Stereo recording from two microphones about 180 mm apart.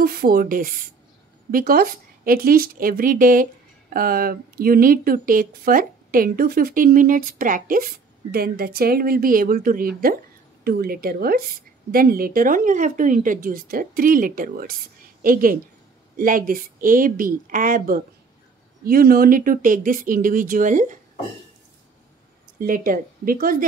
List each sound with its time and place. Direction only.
0.0 s speech: 55° right (ahead or behind)
22.6 s speech: 50° right (ahead or behind)